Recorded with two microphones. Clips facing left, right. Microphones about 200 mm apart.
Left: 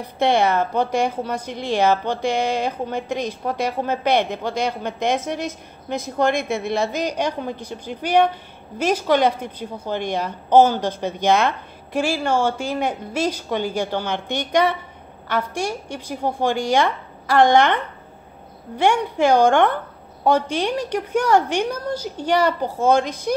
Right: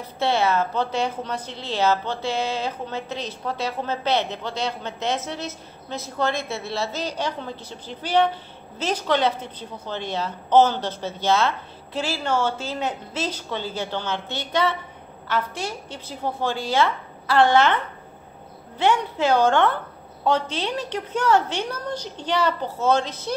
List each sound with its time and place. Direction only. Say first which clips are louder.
0.0 s a woman's voice: left 4 dB; 15° left (ahead or behind)
18.8 s a woman's voice: left 3 dB; 10° left (ahead or behind)